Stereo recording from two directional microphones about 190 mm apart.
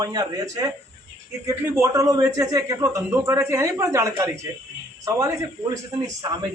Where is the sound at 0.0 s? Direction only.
20° right (ahead or behind).